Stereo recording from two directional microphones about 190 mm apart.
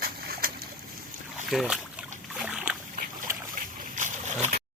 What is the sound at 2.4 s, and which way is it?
Boat, 5° right (ahead or behind).